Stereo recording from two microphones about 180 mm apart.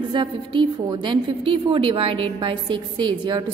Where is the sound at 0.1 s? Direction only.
25° right (ahead or behind).